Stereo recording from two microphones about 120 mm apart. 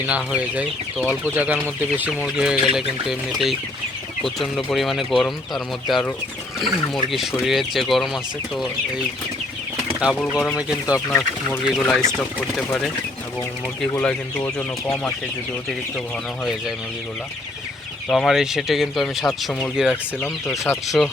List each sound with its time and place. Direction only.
0.0 s speech: 10° right (ahead or behind)
2.2 s speech: 5° right (ahead or behind)
10.2 s speech: 10° left (ahead or behind)
10.6 s speech: 10° right (ahead or behind)
10.9 s speech: 25° left (ahead or behind)
11.8 s speech: 5° left (ahead or behind)
14.4 s speech: 10° left (ahead or behind)
16.4 s speech: 5° right (ahead or behind)
18.1 s speech: centre (ahead or behind)
19.9 s speech: 20° left (ahead or behind)
20.8 s speech: centre (ahead or behind)